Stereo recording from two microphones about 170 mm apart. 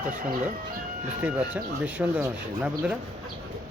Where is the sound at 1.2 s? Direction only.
10° right (ahead or behind).